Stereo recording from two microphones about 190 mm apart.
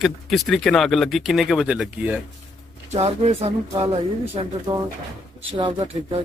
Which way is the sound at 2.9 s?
35° right (ahead or behind).